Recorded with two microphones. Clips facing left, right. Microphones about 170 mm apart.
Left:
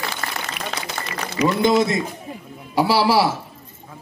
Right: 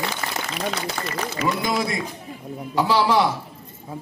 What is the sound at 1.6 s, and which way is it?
Speech, 25° left (ahead or behind).